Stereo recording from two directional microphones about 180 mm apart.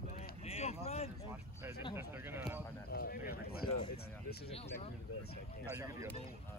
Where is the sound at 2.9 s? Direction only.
60° left (ahead or behind).